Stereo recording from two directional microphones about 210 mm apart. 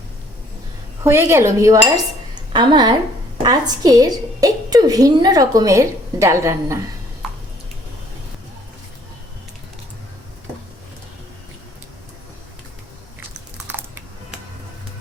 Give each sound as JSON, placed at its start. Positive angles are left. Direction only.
{"t": 1.0, "sound": "a woman's voice", "side_deg": -10}
{"t": 2.3, "sound": "a sound", "side_deg": -20}
{"t": 3.4, "sound": "a woman's voice", "side_deg": -20}